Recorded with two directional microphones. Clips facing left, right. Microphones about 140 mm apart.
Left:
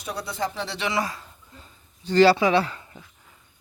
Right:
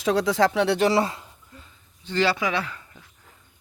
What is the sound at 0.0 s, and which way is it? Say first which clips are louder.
Speech: right 9 dB; 90° right.